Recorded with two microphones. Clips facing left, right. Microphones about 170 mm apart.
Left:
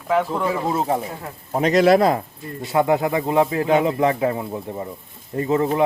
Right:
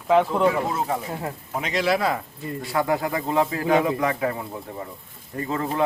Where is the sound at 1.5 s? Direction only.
40° left (ahead or behind).